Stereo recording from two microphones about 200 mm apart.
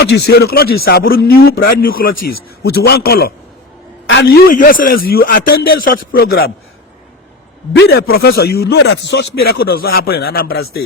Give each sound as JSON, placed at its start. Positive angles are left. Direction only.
{"t": 0.0, "sound": "a man's voice", "side_deg": 60}
{"t": 7.7, "sound": "a man's voice", "side_deg": 55}